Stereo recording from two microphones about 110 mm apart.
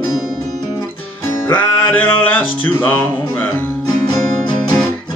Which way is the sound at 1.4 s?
20° left (ahead or behind).